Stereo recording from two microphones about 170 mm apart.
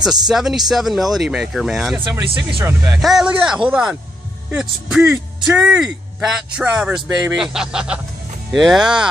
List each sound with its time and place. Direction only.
0.0 s speech: 5° right (ahead or behind)
2.0 s speech: 30° right (ahead or behind)
2.6 s speech: 15° right (ahead or behind)
3.0 s speech: centre (ahead or behind)